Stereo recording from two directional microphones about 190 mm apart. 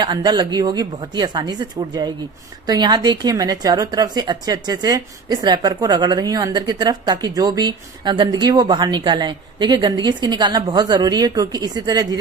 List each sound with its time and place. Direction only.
0.0 s a woman's voice: 25° right (ahead or behind)